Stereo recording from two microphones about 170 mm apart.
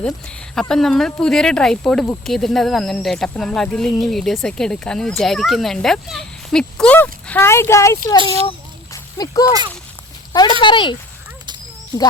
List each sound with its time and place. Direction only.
0.0 s speech: 5° left (ahead or behind)
8.9 s a sound: 20° left (ahead or behind)
10.3 s speech: 25° left (ahead or behind)